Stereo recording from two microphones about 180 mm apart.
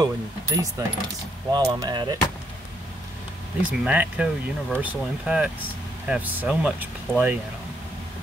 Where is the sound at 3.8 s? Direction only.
10° right (ahead or behind).